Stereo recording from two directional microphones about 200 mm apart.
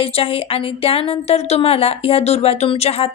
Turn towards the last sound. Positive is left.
turn(degrees=30)  # may be behind; listen again after turning